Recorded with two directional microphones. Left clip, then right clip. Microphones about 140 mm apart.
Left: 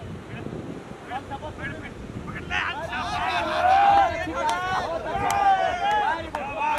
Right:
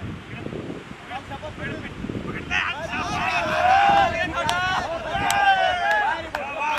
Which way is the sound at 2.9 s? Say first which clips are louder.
Right 2 dB; centre (ahead or behind).